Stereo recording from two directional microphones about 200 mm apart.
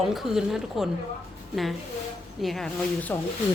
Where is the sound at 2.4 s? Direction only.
Centre (ahead or behind).